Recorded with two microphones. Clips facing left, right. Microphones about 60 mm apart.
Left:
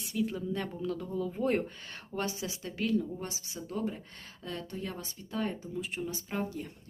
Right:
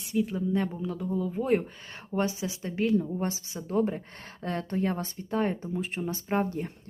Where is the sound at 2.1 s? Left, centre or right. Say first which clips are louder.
Right 6 dB; right.